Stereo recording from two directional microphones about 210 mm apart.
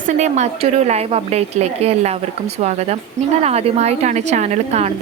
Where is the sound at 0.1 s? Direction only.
35° right (ahead or behind).